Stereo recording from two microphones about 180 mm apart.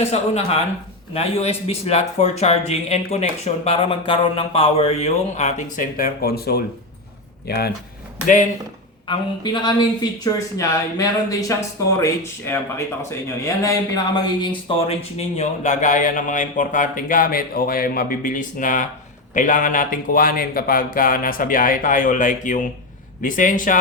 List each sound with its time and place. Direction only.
0.0 s speech: 35° left (ahead or behind); by 7.7 s 60° left (ahead or behind)
9.0 s speech: 25° left (ahead or behind)
15.4 s speech: 40° left (ahead or behind)